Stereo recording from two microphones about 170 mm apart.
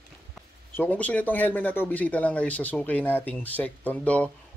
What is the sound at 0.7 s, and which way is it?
Speech, 10° left (ahead or behind).